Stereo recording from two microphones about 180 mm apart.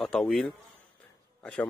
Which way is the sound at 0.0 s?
5° left (ahead or behind).